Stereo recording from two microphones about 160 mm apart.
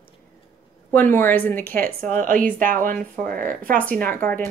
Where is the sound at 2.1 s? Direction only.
55° right (ahead or behind).